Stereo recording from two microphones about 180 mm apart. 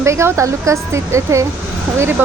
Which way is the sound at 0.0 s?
15° right (ahead or behind).